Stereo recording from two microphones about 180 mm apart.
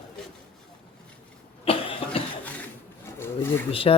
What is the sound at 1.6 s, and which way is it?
Cough, 30° left (ahead or behind).